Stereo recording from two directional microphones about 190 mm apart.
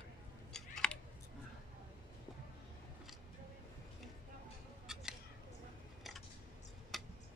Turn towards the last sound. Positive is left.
turn(degrees=0)  # may be behind; listen again after turning